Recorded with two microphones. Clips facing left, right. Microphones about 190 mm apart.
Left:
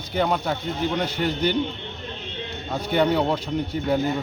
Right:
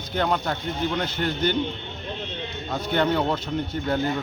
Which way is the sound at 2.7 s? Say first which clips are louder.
Left 2 dB; 10° left (ahead or behind).